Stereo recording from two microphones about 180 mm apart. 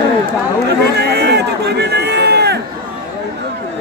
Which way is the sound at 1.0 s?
65° right (ahead or behind).